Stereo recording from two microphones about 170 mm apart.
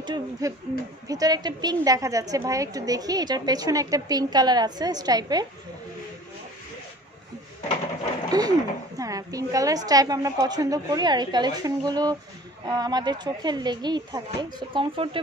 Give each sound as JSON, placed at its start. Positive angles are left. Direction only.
{"t": 0.0, "sound": "a woman's voice", "side_deg": -20}
{"t": 8.3, "sound": "a woman's voice", "side_deg": -20}